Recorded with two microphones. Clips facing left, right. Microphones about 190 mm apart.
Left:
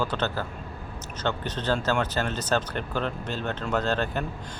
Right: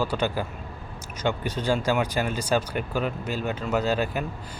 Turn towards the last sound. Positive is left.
turn(degrees=-10)  # may be behind; listen again after turning